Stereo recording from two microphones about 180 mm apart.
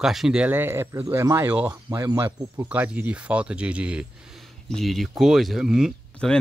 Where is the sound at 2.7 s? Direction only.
10° right (ahead or behind).